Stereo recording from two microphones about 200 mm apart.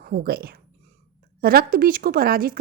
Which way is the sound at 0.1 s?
50° right (ahead or behind).